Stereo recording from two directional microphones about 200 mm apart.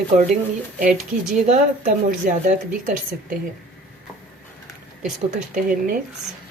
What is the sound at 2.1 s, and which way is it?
A woman's voice, 40° right (ahead or behind).